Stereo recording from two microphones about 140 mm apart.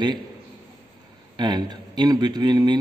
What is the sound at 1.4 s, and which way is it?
A man's voice, 30° right (ahead or behind).